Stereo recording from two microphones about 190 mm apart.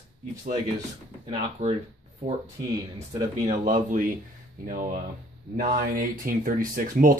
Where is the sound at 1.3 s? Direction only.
30° right (ahead or behind).